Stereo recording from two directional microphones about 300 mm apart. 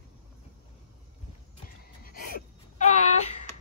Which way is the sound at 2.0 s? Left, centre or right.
Left.